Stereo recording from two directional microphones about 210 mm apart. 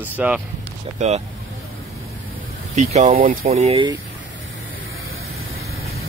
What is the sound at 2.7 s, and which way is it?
Speech, 35° right (ahead or behind).